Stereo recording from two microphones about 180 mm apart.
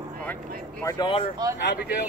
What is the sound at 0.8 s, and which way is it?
Speech, 25° left (ahead or behind).